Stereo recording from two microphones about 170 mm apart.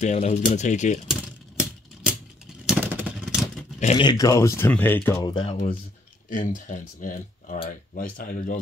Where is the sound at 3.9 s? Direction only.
25° left (ahead or behind).